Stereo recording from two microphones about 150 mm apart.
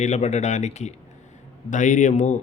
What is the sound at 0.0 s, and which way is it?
Speech, 50° left (ahead or behind).